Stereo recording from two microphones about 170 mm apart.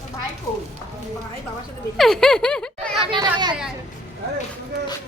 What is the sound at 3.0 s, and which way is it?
Speech, 30° right (ahead or behind).